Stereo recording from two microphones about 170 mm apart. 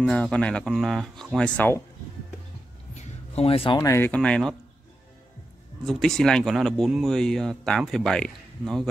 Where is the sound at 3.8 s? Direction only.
15° left (ahead or behind).